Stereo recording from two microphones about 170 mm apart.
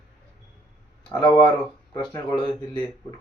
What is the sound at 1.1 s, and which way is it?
Speech, 25° left (ahead or behind).